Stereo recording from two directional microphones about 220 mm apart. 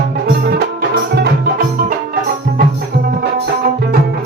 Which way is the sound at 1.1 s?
50° right (ahead or behind).